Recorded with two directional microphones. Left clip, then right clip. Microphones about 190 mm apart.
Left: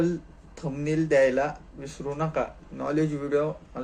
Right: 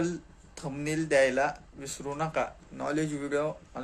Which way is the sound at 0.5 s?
15° right (ahead or behind).